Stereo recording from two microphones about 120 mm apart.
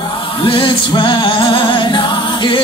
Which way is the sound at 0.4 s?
45° left (ahead or behind).